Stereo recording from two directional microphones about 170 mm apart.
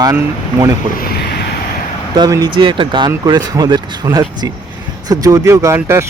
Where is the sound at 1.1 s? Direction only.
70° left (ahead or behind).